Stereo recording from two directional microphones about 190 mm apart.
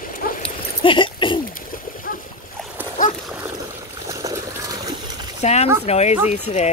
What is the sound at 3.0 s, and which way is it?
Splash, 45° left (ahead or behind).